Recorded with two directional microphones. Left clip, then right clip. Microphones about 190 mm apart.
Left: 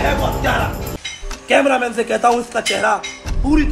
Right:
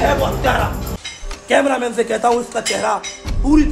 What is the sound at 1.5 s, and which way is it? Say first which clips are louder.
A man's voice: left 1 dB; 20° left (ahead or behind).